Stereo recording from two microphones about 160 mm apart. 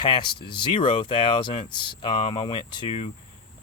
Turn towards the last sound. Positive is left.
turn(degrees=40)  # may be behind; listen again after turning